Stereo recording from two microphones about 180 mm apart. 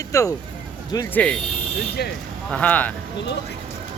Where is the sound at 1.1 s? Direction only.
5° left (ahead or behind).